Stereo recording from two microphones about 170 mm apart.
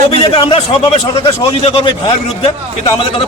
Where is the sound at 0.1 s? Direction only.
30° left (ahead or behind).